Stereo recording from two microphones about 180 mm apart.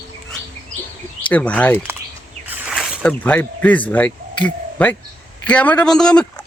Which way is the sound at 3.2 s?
10° left (ahead or behind).